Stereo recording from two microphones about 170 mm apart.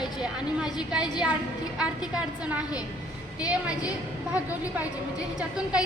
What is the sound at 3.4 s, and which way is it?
Speech, 20° left (ahead or behind).